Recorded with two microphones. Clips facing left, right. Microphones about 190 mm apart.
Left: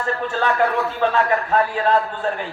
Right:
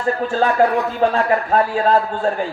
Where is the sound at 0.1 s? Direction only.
35° right (ahead or behind).